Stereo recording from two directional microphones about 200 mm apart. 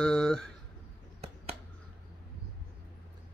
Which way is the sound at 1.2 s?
30° right (ahead or behind).